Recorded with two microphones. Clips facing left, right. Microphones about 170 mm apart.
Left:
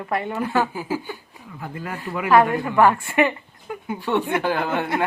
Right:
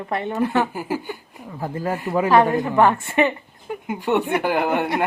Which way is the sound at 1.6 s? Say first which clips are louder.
Right 7 dB; 35° right (ahead or behind).